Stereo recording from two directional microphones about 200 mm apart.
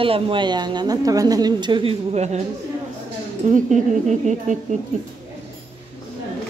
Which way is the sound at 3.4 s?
40° right (ahead or behind).